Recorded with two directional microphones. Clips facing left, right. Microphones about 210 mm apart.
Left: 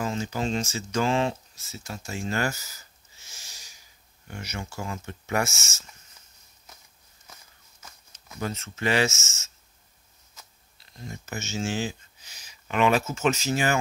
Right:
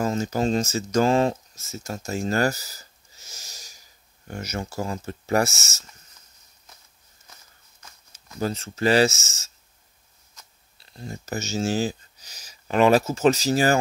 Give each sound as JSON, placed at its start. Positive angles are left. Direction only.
{"t": 0.0, "sound": "speech", "side_deg": -40}
{"t": 8.4, "sound": "speech", "side_deg": -35}
{"t": 10.8, "sound": "speech", "side_deg": -35}